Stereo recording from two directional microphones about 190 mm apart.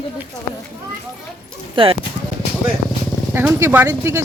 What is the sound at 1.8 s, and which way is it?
Speech, 25° right (ahead or behind).